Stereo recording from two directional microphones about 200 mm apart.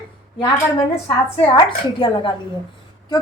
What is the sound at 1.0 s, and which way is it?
A woman's voice, 25° left (ahead or behind).